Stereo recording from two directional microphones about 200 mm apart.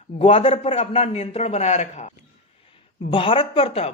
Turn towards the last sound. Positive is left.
turn(degrees=30)  # may be behind; listen again after turning